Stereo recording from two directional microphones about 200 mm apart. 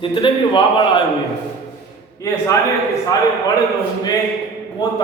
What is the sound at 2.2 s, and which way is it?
A man's voice, 15° left (ahead or behind).